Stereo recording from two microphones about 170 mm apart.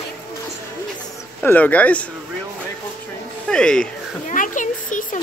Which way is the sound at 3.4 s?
5° left (ahead or behind).